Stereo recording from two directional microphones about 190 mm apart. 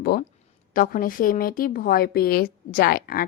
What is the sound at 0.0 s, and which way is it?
A woman's voice, 55° left (ahead or behind).